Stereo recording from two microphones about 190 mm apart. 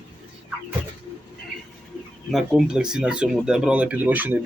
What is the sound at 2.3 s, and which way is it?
Speech, centre (ahead or behind).